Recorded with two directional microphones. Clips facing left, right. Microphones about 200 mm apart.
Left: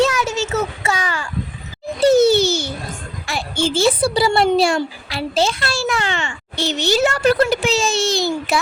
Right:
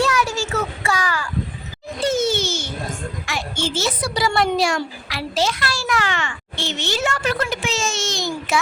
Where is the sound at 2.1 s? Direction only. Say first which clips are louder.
Left 8 dB; 35° left (ahead or behind).